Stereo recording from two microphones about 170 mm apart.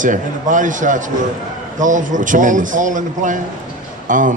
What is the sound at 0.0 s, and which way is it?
Speech, 50° right (ahead or behind).